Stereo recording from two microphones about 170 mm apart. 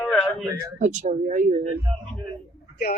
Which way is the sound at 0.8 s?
45° right (ahead or behind).